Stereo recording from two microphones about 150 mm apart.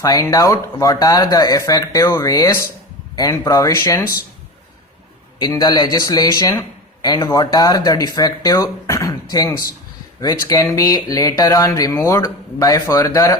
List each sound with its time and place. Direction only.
0.0 s speech: 25° left (ahead or behind)
5.4 s speech: 25° left (ahead or behind)